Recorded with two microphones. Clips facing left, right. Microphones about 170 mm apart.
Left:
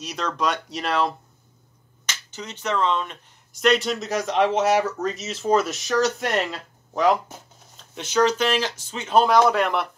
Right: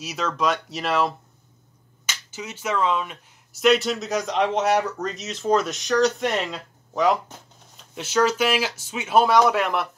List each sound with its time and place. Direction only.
0.0 s speech: 5° right (ahead or behind)
2.3 s speech: 5° right (ahead or behind)